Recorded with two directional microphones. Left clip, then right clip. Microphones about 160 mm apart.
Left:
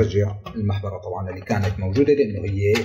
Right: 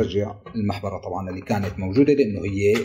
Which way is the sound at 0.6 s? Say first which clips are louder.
Right 2 dB; 35° right (ahead or behind).